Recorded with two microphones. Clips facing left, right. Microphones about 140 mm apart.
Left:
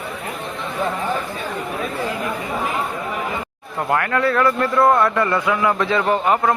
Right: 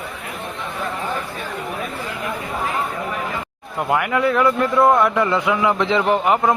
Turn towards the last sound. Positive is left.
turn(degrees=-15)  # may be behind; listen again after turning